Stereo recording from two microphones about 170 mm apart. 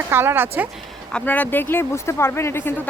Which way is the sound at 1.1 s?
10° left (ahead or behind).